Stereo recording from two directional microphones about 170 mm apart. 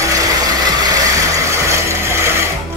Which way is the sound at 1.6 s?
15° right (ahead or behind).